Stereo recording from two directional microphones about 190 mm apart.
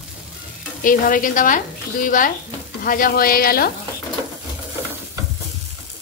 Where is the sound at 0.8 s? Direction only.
45° left (ahead or behind).